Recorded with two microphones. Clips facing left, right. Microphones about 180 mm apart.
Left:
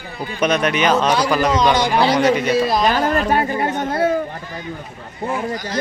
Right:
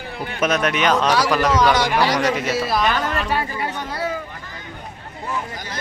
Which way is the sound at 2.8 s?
40° left (ahead or behind).